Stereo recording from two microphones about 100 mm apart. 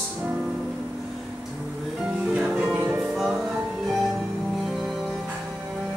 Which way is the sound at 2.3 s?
10° right (ahead or behind).